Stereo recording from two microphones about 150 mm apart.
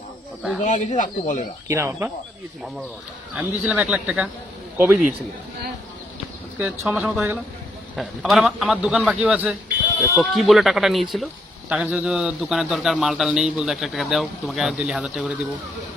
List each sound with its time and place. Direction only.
0.6 s speech: 60° left (ahead or behind)
1.6 s speech: 20° right (ahead or behind)
3.3 s speech: 10° right (ahead or behind)
6.6 s a man's voice: 15° right (ahead or behind)